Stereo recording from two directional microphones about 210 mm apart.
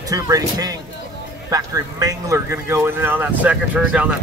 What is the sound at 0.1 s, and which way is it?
Speech, 15° right (ahead or behind).